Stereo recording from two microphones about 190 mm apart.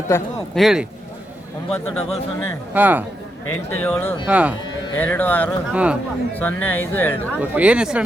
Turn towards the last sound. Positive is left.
turn(degrees=-5)  # may be behind; listen again after turning